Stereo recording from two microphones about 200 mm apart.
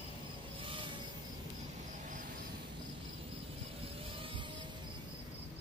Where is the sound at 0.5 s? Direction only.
25° right (ahead or behind).